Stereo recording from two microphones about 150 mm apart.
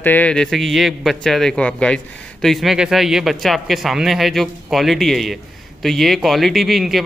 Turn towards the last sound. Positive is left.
turn(degrees=0)  # may be behind; listen again after turning